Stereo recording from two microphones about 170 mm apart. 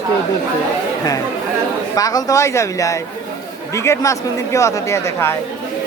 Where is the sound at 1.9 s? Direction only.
20° left (ahead or behind).